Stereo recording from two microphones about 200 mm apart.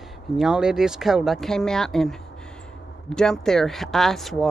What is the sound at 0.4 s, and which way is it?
Speech, 5° right (ahead or behind).